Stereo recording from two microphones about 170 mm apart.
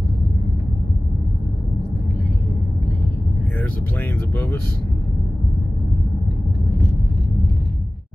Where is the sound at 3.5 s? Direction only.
10° left (ahead or behind).